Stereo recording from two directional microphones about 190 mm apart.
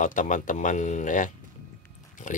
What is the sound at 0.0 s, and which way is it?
Speech, 40° left (ahead or behind).